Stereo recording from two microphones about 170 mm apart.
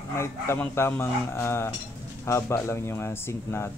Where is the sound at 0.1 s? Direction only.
15° left (ahead or behind).